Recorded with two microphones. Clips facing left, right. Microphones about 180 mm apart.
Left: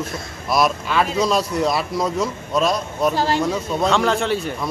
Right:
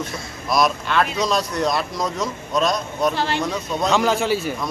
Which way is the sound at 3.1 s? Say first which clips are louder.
Left 3 dB; 40° left (ahead or behind).